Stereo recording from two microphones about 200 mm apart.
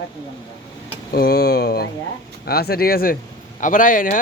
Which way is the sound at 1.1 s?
50° left (ahead or behind).